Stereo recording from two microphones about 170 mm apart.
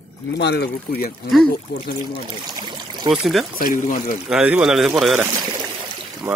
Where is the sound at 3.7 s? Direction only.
50° left (ahead or behind).